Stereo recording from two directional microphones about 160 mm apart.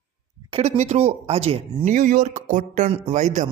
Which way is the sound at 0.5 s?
45° right (ahead or behind).